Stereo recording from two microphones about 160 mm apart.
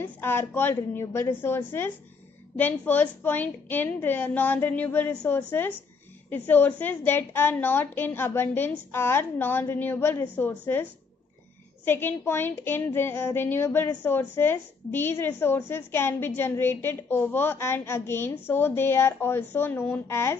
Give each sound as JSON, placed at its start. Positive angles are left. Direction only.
{"t": 0.0, "sound": "a woman's voice", "side_deg": 15}